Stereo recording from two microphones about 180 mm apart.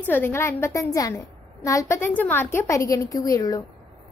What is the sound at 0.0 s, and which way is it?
A child's voice, 10° left (ahead or behind).